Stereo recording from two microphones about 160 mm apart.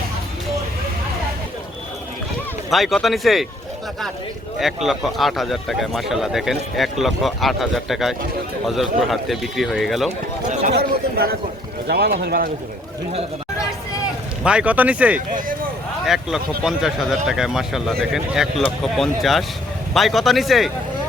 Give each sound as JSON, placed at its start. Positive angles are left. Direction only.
{"t": 2.6, "sound": "speech", "side_deg": 0}
{"t": 4.5, "sound": "speech", "side_deg": 0}
{"t": 10.7, "sound": "speech", "side_deg": -75}
{"t": 14.4, "sound": "speech", "side_deg": -5}